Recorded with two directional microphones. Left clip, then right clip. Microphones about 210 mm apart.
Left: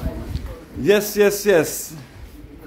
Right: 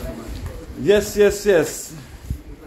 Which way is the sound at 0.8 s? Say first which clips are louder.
Right 1 dB; 15° left (ahead or behind).